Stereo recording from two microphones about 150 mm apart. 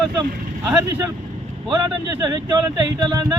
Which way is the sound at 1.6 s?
30° right (ahead or behind).